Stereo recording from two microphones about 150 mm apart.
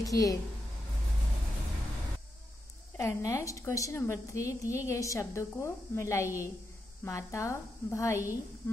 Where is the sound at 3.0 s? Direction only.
20° left (ahead or behind).